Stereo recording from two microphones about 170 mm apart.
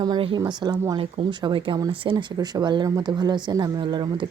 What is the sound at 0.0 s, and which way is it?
Speech, 30° right (ahead or behind).